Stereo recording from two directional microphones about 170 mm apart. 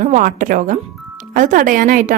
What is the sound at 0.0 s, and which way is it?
Speech, 50° right (ahead or behind).